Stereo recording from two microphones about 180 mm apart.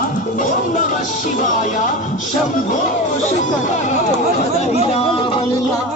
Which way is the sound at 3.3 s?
45° left (ahead or behind).